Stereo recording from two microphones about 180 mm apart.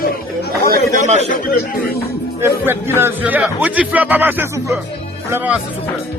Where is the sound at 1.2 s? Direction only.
45° left (ahead or behind).